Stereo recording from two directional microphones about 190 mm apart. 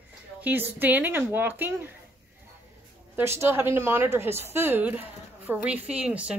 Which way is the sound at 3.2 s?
15° right (ahead or behind).